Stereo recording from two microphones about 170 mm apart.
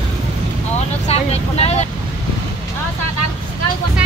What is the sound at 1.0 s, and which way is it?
Speech, 40° left (ahead or behind).